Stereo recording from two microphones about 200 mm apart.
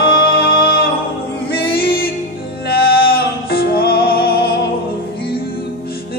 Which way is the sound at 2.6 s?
50° left (ahead or behind).